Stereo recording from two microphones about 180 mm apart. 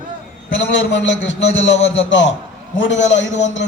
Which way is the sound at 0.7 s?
90° left.